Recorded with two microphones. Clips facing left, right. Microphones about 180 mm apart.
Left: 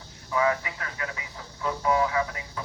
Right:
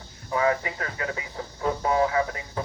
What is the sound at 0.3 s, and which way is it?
Speech, 35° right (ahead or behind).